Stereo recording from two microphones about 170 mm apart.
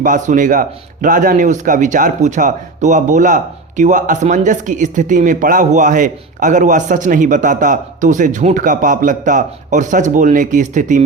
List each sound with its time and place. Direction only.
0.0 s speech: 50° right (ahead or behind)